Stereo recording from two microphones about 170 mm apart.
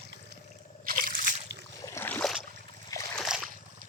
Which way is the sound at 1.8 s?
15° left (ahead or behind).